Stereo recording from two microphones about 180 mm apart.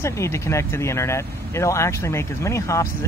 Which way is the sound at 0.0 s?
15° left (ahead or behind).